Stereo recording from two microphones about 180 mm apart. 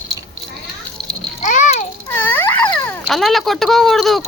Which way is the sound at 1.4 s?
40° left (ahead or behind).